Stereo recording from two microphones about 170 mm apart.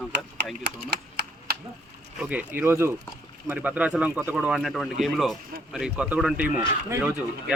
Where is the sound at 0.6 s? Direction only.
70° right (ahead or behind).